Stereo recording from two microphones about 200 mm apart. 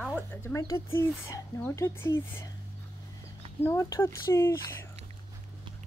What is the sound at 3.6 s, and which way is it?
Speech, 15° left (ahead or behind).